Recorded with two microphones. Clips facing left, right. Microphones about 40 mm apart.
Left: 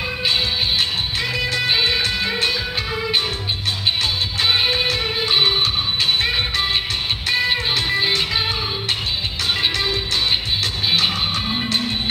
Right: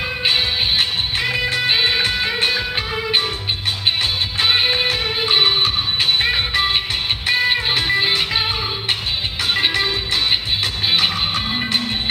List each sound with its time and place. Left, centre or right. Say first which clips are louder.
0.2 s music: right 2 dB; right
4.4 s music: right 1 dB; centre
9.5 s music: right 2 dB; centre